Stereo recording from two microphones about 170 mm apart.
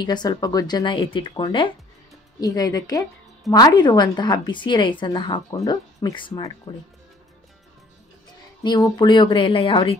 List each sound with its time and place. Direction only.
0.0 s speech: 25° left (ahead or behind)
8.6 s speech: 25° left (ahead or behind)